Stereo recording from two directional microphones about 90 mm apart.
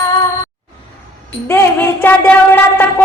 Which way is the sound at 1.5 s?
25° left (ahead or behind).